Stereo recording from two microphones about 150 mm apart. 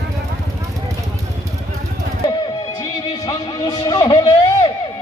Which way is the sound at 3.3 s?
25° left (ahead or behind).